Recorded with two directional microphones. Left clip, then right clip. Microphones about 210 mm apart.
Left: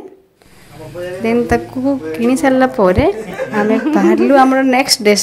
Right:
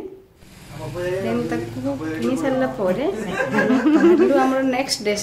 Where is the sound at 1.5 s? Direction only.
40° left (ahead or behind).